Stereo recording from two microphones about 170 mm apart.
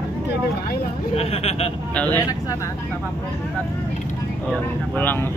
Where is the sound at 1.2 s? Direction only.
35° left (ahead or behind).